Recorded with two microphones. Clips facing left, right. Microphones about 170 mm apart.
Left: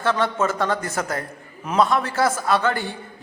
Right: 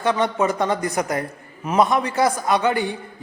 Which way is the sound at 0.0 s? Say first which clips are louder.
Right 1 dB; 15° right (ahead or behind).